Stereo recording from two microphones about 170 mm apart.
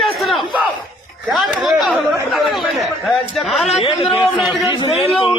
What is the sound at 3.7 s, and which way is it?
A man's voice, 35° left (ahead or behind).